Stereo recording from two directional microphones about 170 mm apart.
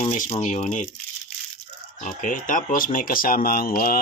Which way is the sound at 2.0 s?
50° left (ahead or behind).